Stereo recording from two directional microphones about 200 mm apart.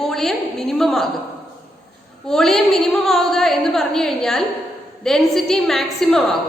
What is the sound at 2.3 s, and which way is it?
A woman's voice, centre (ahead or behind).